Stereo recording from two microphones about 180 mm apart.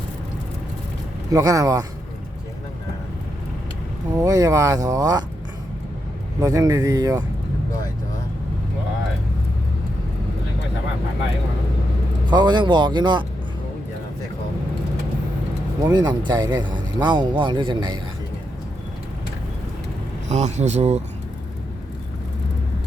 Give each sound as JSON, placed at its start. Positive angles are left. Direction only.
{"t": 1.3, "sound": "speech", "side_deg": -20}
{"t": 4.2, "sound": "speech", "side_deg": -20}
{"t": 6.4, "sound": "speech", "side_deg": -20}
{"t": 12.3, "sound": "speech", "side_deg": -25}
{"t": 15.9, "sound": "speech", "side_deg": -25}
{"t": 20.2, "sound": "speech", "side_deg": -40}